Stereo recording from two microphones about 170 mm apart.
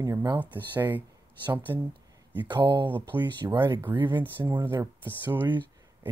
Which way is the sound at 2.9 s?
10° right (ahead or behind).